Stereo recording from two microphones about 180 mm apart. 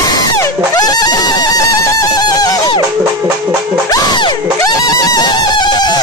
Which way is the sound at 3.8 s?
20° left (ahead or behind).